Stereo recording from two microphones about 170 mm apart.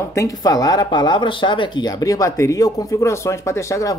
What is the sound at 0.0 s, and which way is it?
Speech, 15° left (ahead or behind).